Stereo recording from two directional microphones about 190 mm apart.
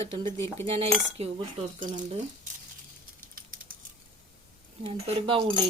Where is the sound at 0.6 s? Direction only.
30° right (ahead or behind).